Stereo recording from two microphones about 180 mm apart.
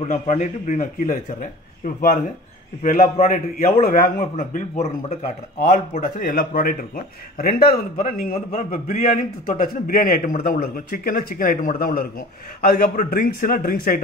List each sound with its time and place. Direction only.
0.0 s a man's voice: 40° left (ahead or behind)
2.8 s a man's voice: 45° left (ahead or behind)
5.6 s a man's voice: 50° left (ahead or behind)